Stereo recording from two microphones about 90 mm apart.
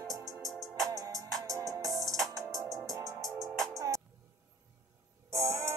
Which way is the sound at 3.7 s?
40° right (ahead or behind).